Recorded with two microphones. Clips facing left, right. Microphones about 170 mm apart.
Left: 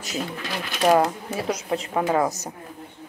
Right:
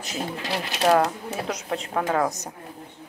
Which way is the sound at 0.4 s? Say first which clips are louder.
Right 2 dB; 35° right (ahead or behind).